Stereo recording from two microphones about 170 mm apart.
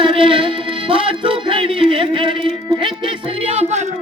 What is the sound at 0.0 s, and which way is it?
Music, 30° right (ahead or behind).